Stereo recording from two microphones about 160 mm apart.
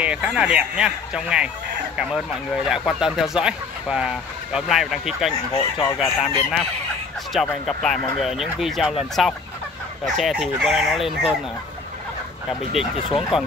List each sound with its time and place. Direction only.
0.0 s speech: 5° right (ahead or behind)
5.5 s speech: 35° left (ahead or behind)
5.9 s speech: centre (ahead or behind)
7.6 s speech: 5° left (ahead or behind)
13.3 s speech: 5° right (ahead or behind)